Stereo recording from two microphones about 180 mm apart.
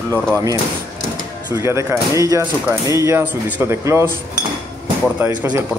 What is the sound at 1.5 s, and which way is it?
Speech, 15° right (ahead or behind).